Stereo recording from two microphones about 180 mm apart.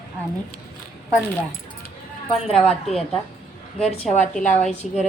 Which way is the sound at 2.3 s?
Centre (ahead or behind).